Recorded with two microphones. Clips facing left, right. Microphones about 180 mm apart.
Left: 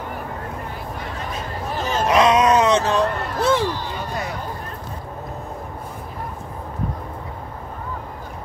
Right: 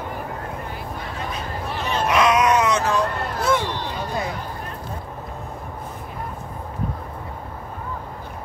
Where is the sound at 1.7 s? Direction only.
40° left (ahead or behind).